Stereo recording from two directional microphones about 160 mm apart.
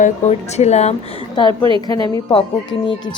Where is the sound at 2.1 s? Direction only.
35° left (ahead or behind).